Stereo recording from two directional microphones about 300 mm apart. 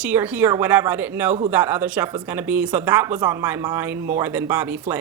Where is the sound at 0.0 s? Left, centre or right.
Centre.